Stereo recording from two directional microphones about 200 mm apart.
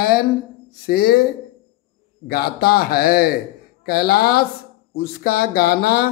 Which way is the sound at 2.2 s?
50° left (ahead or behind).